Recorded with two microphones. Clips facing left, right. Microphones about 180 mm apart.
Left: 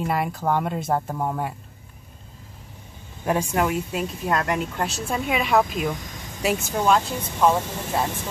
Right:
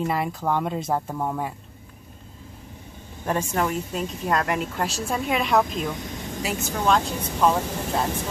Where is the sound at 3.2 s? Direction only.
10° left (ahead or behind).